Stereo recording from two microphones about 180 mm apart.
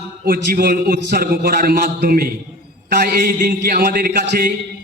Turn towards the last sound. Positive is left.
turn(degrees=-55)  # may be behind; listen again after turning